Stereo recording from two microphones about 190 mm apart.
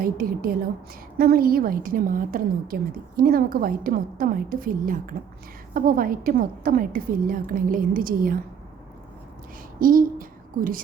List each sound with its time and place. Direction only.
0.0 s a woman's voice: 50° right (ahead or behind)
9.8 s a woman's voice: 45° right (ahead or behind)